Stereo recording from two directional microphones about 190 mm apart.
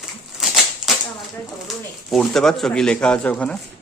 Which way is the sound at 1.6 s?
Centre (ahead or behind).